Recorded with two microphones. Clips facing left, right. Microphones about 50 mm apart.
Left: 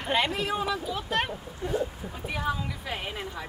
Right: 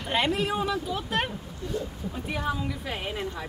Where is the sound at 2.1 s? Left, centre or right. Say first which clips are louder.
Even; centre.